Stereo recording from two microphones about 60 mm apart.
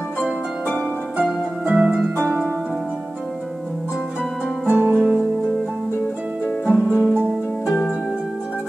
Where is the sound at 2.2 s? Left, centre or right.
Right.